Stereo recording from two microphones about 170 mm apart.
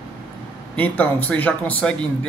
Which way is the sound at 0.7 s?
10° left (ahead or behind).